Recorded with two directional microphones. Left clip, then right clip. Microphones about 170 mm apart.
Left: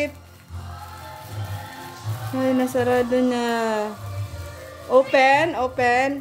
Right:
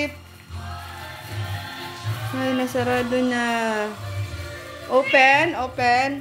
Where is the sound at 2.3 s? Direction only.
25° left (ahead or behind).